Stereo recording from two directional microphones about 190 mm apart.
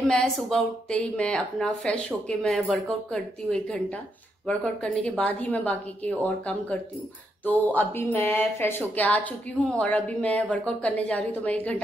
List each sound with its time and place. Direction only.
0.1 s speech: 5° left (ahead or behind)